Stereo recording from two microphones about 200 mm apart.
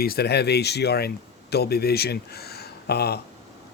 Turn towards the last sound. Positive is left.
turn(degrees=55)  # may be behind; listen again after turning